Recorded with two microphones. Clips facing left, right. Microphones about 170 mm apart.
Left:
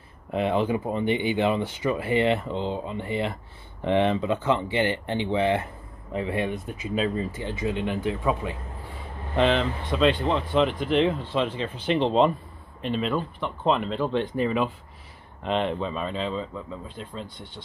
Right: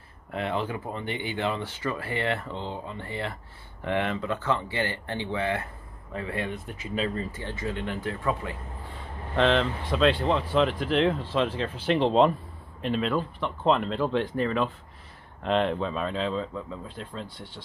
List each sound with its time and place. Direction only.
0.3 s speech: 20° left (ahead or behind)
9.3 s speech: 5° left (ahead or behind)